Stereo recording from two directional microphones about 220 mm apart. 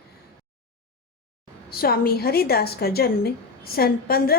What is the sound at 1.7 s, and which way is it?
A woman's voice, 45° left (ahead or behind).